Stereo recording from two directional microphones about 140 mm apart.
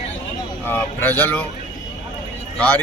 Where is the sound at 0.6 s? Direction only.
15° left (ahead or behind).